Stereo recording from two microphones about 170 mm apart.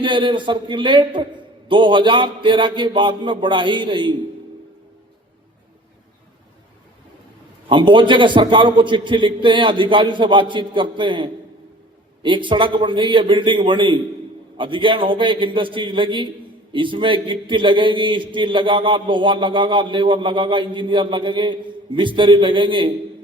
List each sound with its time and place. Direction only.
0.0 s a man's voice: 30° right (ahead or behind)
7.7 s a man's voice: 30° right (ahead or behind)